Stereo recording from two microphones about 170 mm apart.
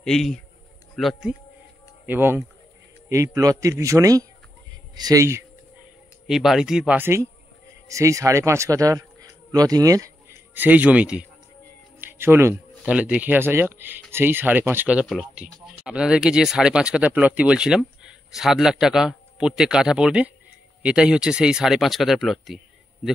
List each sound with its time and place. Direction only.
0.0 s speech: 5° left (ahead or behind)
2.0 s a man's voice: 10° right (ahead or behind)
6.2 s speech: centre (ahead or behind)